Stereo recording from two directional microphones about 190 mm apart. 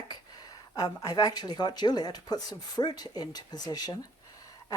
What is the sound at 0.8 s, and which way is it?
Speech, 20° left (ahead or behind).